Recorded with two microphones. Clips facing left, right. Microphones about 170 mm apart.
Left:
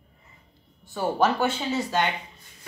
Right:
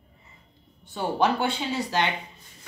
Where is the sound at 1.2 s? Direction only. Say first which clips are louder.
Left 1 dB; 15° right (ahead or behind).